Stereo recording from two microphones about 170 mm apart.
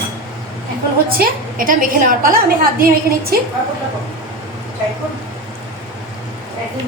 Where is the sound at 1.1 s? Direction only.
60° right (ahead or behind).